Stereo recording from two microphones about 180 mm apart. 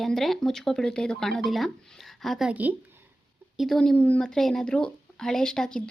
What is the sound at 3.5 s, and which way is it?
Speech, centre (ahead or behind).